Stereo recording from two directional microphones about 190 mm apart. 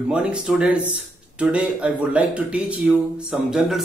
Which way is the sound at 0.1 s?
5° right (ahead or behind).